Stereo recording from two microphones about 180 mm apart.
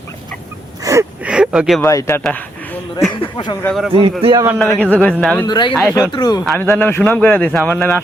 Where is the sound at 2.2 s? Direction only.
10° left (ahead or behind).